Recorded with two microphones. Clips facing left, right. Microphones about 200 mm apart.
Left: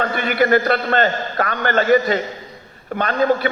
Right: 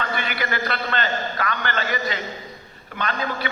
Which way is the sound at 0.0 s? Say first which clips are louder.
Left 9 dB; 45° left (ahead or behind).